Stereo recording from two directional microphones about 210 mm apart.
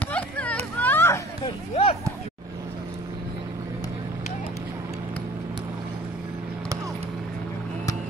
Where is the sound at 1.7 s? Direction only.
25° left (ahead or behind).